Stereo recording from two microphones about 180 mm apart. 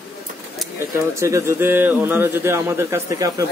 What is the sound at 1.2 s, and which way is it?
Speech, 15° right (ahead or behind).